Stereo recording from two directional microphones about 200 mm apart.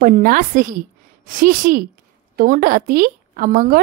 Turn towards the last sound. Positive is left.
turn(degrees=-45)  # may be behind; listen again after turning